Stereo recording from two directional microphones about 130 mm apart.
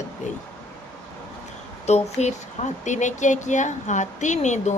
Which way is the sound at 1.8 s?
60° left (ahead or behind).